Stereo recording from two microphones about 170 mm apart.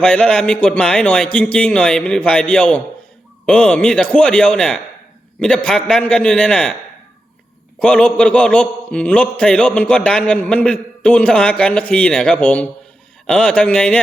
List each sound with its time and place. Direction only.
0.0 s a man's voice: 5° left (ahead or behind)
7.8 s a man's voice: 5° left (ahead or behind)